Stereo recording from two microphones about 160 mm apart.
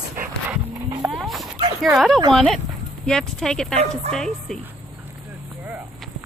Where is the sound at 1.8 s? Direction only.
Centre (ahead or behind).